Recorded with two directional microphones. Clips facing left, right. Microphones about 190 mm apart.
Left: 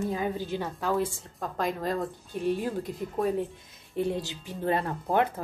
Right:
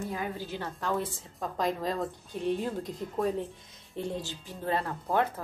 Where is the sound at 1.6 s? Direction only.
Centre (ahead or behind).